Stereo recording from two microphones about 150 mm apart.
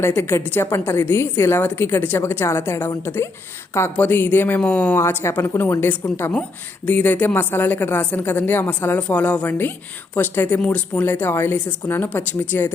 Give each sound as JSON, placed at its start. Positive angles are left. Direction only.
{"t": 0.0, "sound": "a woman's voice", "side_deg": 15}